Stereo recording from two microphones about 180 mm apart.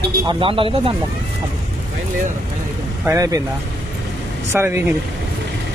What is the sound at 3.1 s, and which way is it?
Speech, 20° right (ahead or behind).